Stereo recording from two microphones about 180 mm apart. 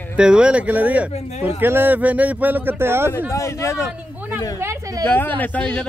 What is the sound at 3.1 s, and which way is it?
Speech, 15° left (ahead or behind).